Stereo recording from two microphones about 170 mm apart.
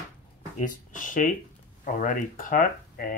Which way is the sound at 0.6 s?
50° left (ahead or behind).